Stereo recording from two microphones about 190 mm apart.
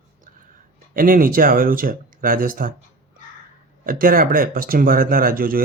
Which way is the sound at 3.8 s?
50° right (ahead or behind).